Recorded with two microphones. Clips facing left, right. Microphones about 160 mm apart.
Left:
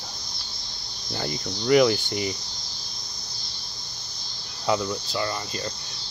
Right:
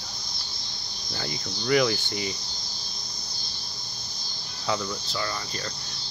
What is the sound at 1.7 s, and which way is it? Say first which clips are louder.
Cricket: left 5 dB; 10° left (ahead or behind).